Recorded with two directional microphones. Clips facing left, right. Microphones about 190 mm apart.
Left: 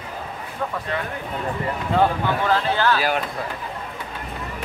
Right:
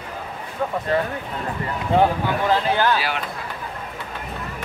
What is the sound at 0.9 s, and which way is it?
Speech, 35° right (ahead or behind).